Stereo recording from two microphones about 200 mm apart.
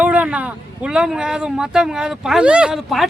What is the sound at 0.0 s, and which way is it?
Speech, 5° right (ahead or behind).